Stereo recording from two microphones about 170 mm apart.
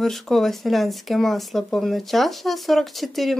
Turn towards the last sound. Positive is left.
turn(degrees=0)  # may be behind; listen again after turning